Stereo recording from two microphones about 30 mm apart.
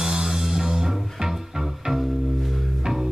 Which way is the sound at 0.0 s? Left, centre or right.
Centre.